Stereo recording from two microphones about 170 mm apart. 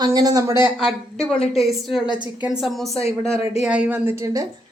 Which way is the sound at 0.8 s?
Centre (ahead or behind).